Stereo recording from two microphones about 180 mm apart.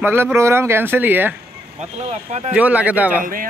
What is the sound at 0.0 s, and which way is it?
Speech, 10° right (ahead or behind).